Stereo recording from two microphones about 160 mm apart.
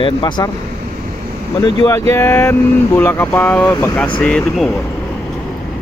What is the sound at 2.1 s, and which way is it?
Speech, 15° left (ahead or behind).